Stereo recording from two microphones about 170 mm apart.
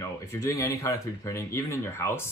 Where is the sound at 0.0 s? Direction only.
15° left (ahead or behind).